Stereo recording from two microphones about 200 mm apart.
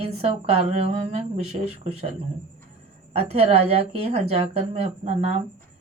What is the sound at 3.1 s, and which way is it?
Speech, 30° right (ahead or behind).